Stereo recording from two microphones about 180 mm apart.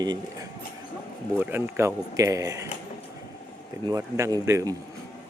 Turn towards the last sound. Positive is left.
turn(degrees=-20)  # may be behind; listen again after turning